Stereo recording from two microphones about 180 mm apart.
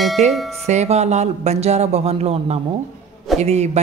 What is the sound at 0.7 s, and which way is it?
Speech, 40° right (ahead or behind).